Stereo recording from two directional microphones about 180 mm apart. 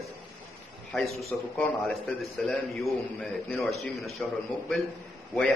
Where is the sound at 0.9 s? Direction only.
Centre (ahead or behind).